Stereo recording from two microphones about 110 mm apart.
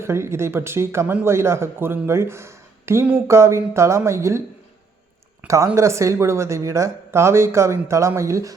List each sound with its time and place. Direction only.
0.0 s speech: 25° right (ahead or behind)
5.7 s speech: 25° right (ahead or behind)